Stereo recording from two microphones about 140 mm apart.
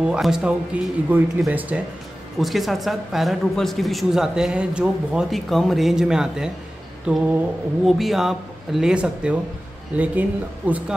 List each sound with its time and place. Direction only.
0.0 s a woman's voice: 5° right (ahead or behind)
0.7 s mantra: 10° right (ahead or behind)
2.3 s a woman's voice: centre (ahead or behind)
7.1 s mantra: 10° right (ahead or behind)
8.0 s a woman's voice: centre (ahead or behind)
9.9 s mantra: 10° right (ahead or behind)